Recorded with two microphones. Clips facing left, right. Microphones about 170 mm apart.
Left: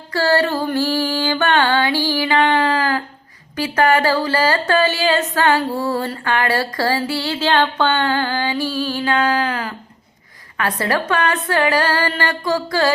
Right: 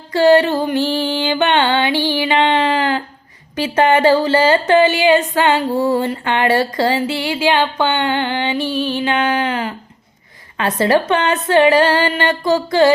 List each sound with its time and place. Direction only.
0.1 s music: 20° right (ahead or behind)
3.5 s speech: 25° right (ahead or behind)